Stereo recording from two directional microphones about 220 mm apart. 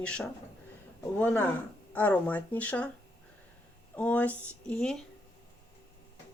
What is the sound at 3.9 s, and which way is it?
Speech, 5° left (ahead or behind).